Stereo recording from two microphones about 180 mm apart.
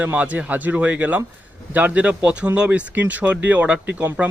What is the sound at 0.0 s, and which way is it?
A man's voice, 10° right (ahead or behind).